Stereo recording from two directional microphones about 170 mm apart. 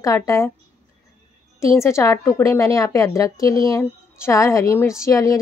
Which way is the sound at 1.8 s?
15° left (ahead or behind).